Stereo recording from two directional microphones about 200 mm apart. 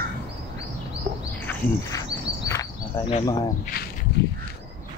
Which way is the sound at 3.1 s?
20° left (ahead or behind).